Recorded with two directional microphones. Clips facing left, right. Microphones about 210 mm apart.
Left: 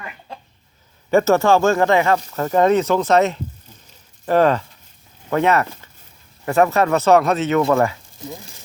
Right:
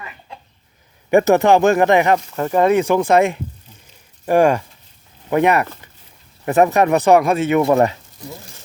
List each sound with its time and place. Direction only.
1.1 s speech: 15° right (ahead or behind)